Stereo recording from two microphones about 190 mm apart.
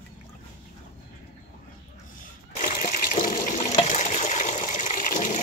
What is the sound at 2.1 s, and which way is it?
Water, 45° left (ahead or behind).